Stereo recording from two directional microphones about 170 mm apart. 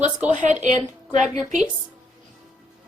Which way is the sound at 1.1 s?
Centre (ahead or behind).